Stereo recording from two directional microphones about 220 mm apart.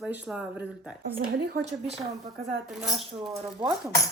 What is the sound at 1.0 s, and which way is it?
Speech, 40° right (ahead or behind).